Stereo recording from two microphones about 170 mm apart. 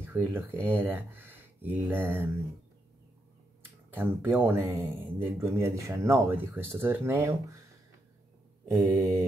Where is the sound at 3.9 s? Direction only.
10° right (ahead or behind).